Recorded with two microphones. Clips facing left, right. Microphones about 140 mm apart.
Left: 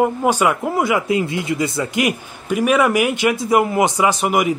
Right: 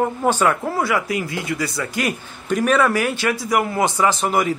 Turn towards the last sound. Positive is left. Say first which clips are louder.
# left 2 dB
turn(degrees=15)  # may be behind; listen again after turning